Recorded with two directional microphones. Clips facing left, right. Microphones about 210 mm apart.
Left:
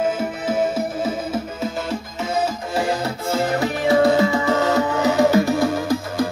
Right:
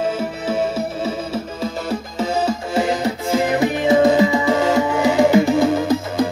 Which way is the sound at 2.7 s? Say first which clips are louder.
Right 3 dB; 20° right (ahead or behind).